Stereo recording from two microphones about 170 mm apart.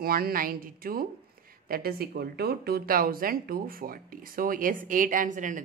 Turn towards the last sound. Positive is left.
turn(degrees=-50)  # may be behind; listen again after turning